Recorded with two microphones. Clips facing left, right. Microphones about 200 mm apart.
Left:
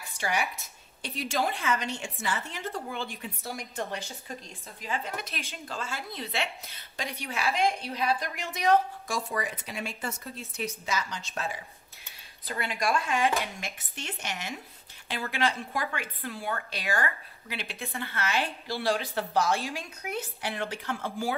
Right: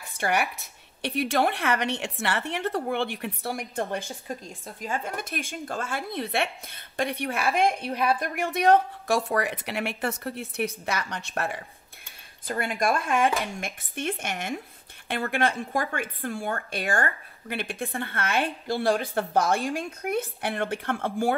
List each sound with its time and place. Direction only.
0.2 s a woman's voice: 65° right (ahead or behind)
12.4 s speech: 50° right (ahead or behind)